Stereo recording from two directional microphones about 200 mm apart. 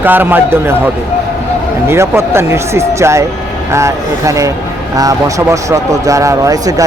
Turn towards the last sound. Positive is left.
turn(degrees=-15)  # may be behind; listen again after turning